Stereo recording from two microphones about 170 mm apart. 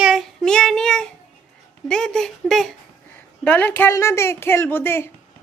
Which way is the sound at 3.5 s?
10° left (ahead or behind).